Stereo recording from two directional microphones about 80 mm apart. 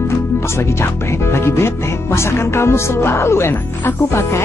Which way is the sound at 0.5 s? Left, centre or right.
Left.